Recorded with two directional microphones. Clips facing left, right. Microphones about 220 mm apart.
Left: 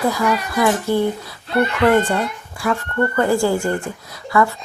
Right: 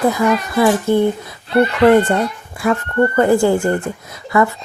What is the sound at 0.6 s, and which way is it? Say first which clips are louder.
A child's voice: right 4 dB; 20° right (ahead or behind).